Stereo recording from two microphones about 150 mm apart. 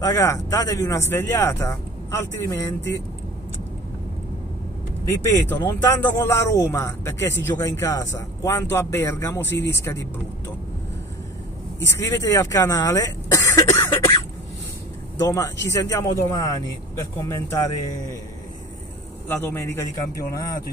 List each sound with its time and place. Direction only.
0.0 s speech: 20° left (ahead or behind)
5.0 s speech: 20° left (ahead or behind)
11.8 s speech: 15° left (ahead or behind)
15.1 s speech: 20° left (ahead or behind)
19.2 s speech: 15° left (ahead or behind)